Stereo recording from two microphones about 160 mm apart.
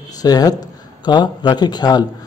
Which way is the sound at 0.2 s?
25° left (ahead or behind).